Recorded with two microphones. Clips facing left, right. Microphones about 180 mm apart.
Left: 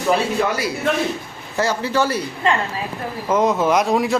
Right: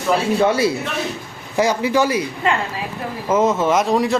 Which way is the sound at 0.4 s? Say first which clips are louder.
Right 6 dB; 25° right (ahead or behind).